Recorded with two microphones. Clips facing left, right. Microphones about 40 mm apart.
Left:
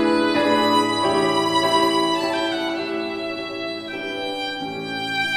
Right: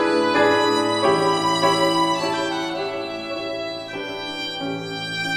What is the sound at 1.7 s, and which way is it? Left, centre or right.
Music, centre.